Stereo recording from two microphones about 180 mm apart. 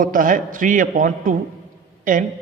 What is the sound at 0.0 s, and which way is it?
A man's voice, 50° right (ahead or behind).